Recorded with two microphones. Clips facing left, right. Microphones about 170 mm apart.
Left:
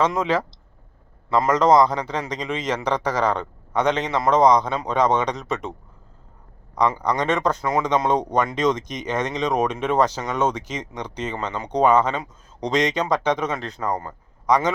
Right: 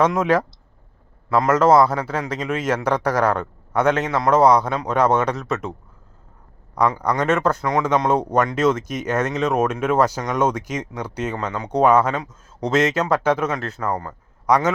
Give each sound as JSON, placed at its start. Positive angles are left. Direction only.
{"t": 0.1, "sound": "speech", "side_deg": -10}
{"t": 7.0, "sound": "speech", "side_deg": -10}
{"t": 13.8, "sound": "a man's voice", "side_deg": 15}
{"t": 14.4, "sound": "a man's voice", "side_deg": -10}